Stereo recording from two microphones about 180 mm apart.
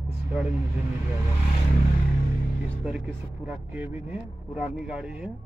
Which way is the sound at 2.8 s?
5° right (ahead or behind).